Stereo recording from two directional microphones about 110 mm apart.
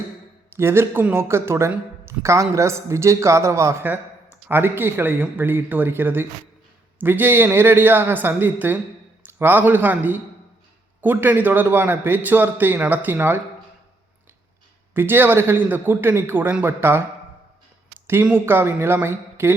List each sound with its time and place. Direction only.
0.5 s a man's voice: 20° right (ahead or behind)
14.9 s speech: 20° right (ahead or behind)